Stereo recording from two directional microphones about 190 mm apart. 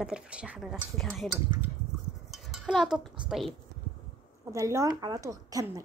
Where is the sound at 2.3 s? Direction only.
Centre (ahead or behind).